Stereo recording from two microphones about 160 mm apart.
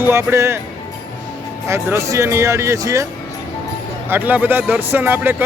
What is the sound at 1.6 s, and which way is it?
Speech, 20° right (ahead or behind).